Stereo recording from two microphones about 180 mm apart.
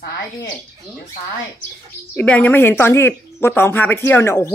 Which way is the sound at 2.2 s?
10° left (ahead or behind).